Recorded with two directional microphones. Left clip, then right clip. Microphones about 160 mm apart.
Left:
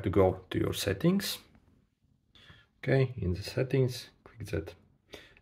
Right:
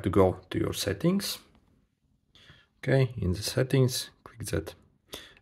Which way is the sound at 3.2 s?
40° right (ahead or behind).